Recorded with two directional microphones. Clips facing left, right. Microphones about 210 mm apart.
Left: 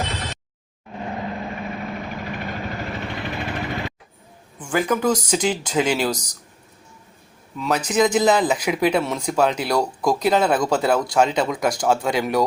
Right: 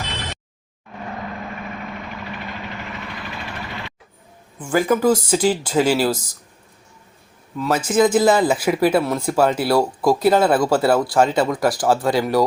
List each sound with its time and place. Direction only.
0.9 s vehicle: 20° left (ahead or behind)
2.0 s vehicle: 45° left (ahead or behind); by 3.4 s 25° left (ahead or behind)
4.5 s speech: 5° right (ahead or behind)
7.6 s speech: 5° right (ahead or behind)